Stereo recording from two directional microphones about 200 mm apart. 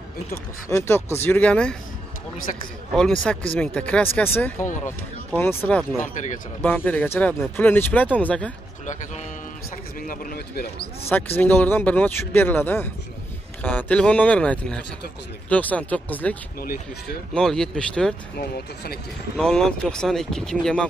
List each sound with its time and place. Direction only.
0.7 s speech: 15° left (ahead or behind)
3.0 s speech: 5° left (ahead or behind)
6.1 s speech: 40° left (ahead or behind)
6.6 s speech: 10° left (ahead or behind)
10.0 s speech: 50° left (ahead or behind)
11.1 s speech: 10° left (ahead or behind)
19.3 s speech: 5° left (ahead or behind)